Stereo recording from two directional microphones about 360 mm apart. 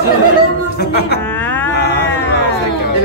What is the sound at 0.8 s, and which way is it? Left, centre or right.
Speech, left.